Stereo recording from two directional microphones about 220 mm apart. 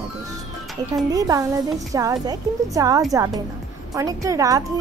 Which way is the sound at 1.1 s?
15° right (ahead or behind).